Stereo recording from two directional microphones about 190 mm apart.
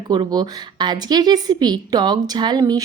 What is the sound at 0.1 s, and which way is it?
A woman's voice, 20° right (ahead or behind).